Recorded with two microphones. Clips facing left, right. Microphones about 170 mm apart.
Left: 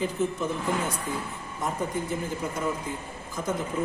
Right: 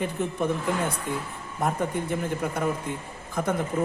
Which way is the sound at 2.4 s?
60° right (ahead or behind).